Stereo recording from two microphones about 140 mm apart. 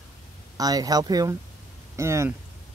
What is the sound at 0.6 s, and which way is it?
Speech, 25° right (ahead or behind).